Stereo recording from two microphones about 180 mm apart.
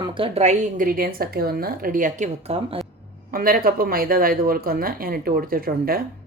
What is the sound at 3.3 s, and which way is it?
Speech, 55° right (ahead or behind).